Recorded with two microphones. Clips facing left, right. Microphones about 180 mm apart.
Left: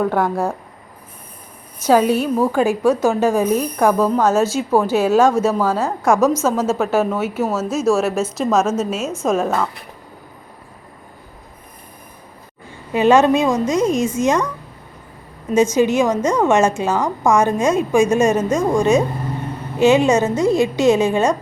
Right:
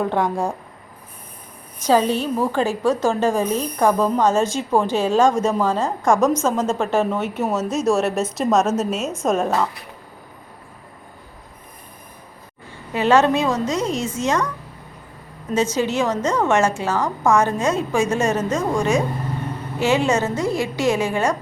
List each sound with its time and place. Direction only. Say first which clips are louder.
0.1 s a woman's voice: left 2 dB; 5° left (ahead or behind)
1.9 s a woman's voice: left 3 dB; 10° left (ahead or behind)
12.9 s a woman's voice: left 3 dB; 15° left (ahead or behind)
15.7 s a woman's voice: left 5 dB; 15° left (ahead or behind)